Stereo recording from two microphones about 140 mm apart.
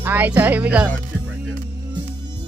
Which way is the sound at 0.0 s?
15° right (ahead or behind).